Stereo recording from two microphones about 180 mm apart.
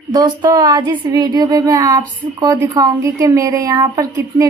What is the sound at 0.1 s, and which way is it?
Speech, 20° right (ahead or behind).